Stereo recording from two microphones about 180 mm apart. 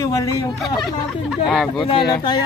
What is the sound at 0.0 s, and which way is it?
Speech, 20° left (ahead or behind).